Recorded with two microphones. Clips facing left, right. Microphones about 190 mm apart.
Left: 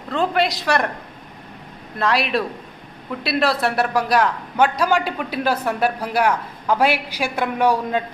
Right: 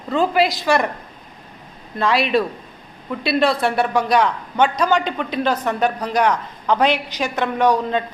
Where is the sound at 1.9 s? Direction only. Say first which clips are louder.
Right 3 dB; centre (ahead or behind).